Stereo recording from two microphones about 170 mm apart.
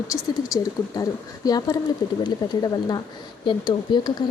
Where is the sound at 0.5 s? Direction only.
20° left (ahead or behind).